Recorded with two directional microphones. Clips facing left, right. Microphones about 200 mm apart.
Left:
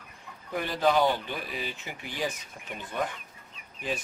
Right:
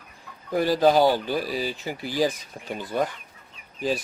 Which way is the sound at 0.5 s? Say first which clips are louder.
Right 6 dB; 35° right (ahead or behind).